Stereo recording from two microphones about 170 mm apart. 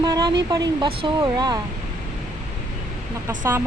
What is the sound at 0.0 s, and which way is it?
Speech, 25° right (ahead or behind).